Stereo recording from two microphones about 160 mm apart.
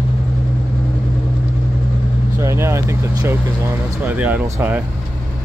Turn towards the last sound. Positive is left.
turn(degrees=-15)  # may be behind; listen again after turning